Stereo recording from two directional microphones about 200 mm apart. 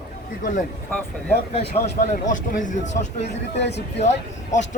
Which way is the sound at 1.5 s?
30° left (ahead or behind).